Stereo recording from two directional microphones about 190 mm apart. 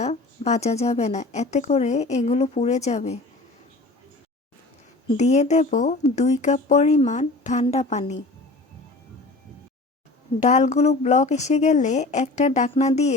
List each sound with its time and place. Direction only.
0.0 s a woman's voice: 35° left (ahead or behind)
5.0 s a woman's voice: 35° left (ahead or behind)
10.4 s a woman's voice: 40° left (ahead or behind)